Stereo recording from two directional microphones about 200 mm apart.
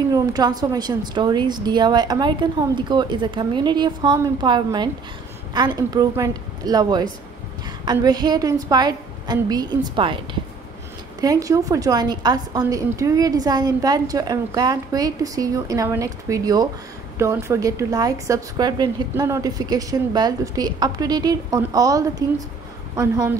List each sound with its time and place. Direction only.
0.1 s a woman's voice: 20° right (ahead or behind)